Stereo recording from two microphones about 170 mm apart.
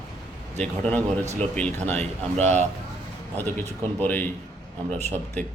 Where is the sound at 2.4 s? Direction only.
40° right (ahead or behind).